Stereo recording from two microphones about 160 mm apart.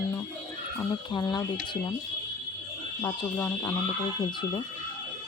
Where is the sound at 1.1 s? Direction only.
25° left (ahead or behind).